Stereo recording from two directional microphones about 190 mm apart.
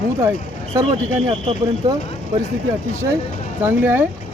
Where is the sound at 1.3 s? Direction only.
25° right (ahead or behind).